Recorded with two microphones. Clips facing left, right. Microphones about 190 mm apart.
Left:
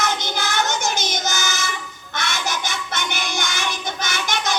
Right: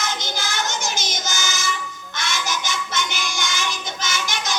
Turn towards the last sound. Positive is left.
turn(degrees=60)  # may be behind; listen again after turning